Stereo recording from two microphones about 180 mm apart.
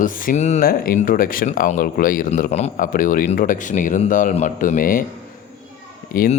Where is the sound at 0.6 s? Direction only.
55° left (ahead or behind).